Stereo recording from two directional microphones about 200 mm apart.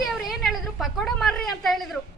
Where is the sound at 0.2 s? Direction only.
Centre (ahead or behind).